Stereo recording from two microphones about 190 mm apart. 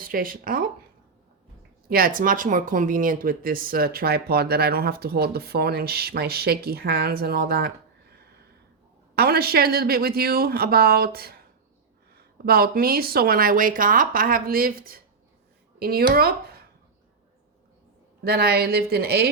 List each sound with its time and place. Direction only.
0.0 s speech: 45° right (ahead or behind)
1.9 s speech: 50° right (ahead or behind)
9.1 s speech: 55° right (ahead or behind)
18.2 s speech: 55° right (ahead or behind)